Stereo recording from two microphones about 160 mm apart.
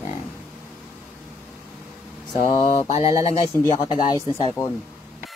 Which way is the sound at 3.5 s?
15° left (ahead or behind).